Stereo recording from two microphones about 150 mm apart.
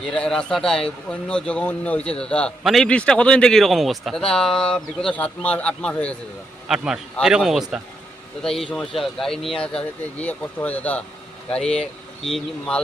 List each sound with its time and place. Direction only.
0.0 s a man's voice: 5° left (ahead or behind)
6.7 s a man's voice: 5° right (ahead or behind)